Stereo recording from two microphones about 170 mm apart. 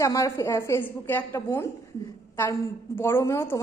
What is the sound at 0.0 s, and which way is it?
A woman's voice, 20° left (ahead or behind).